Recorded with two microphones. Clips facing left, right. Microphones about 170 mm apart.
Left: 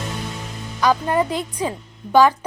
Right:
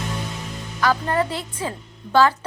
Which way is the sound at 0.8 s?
15° left (ahead or behind).